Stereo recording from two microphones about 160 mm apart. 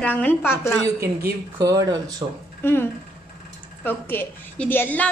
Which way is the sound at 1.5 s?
20° right (ahead or behind).